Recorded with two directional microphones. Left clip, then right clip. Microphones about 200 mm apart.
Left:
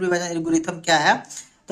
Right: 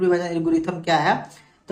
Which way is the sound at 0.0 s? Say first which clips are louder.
Right 2 dB; 20° left (ahead or behind).